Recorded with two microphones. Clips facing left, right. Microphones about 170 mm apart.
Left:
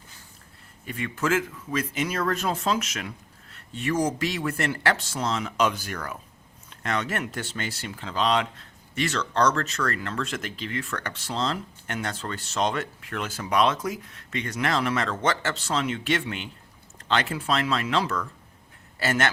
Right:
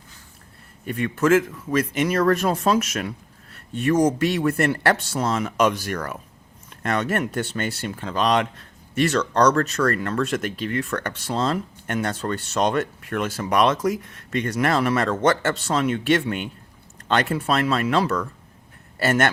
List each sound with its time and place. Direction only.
0.9 s speech: 50° right (ahead or behind)